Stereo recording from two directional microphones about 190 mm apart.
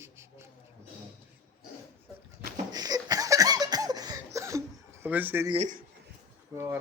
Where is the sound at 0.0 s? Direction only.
15° right (ahead or behind).